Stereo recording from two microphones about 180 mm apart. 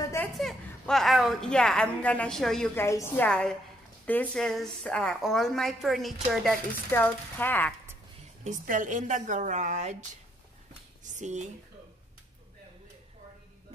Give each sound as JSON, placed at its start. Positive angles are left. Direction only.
{"t": 0.0, "sound": "a sound", "side_deg": 15}
{"t": 0.3, "sound": "a woman's voice", "side_deg": 0}
{"t": 6.9, "sound": "speech", "side_deg": 10}
{"t": 8.5, "sound": "a woman's voice", "side_deg": -45}
{"t": 11.1, "sound": "speech", "side_deg": -40}